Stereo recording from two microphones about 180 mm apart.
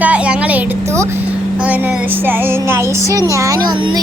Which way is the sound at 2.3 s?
15° right (ahead or behind).